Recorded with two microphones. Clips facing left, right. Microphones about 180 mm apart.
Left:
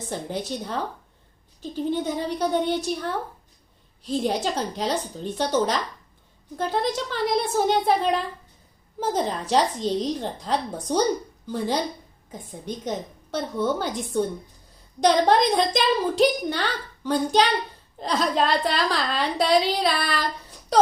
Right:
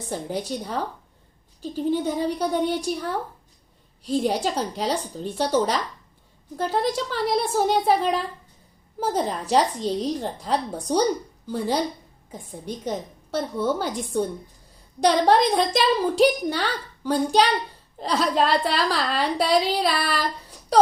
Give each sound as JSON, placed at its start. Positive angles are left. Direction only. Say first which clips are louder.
{"t": 0.1, "sound": "a woman's voice", "louder": "right 2 dB", "side_deg": -10}